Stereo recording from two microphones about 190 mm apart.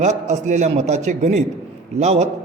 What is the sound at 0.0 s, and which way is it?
A man's voice, 40° right (ahead or behind).